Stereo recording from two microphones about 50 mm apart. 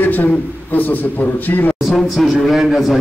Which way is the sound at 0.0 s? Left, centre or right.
Left.